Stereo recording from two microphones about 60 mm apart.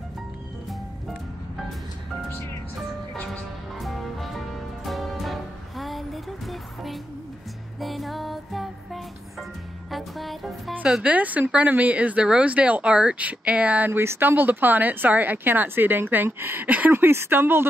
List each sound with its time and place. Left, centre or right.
3.8 s music: centre
10.8 s a woman's voice: centre
13.9 s speech: right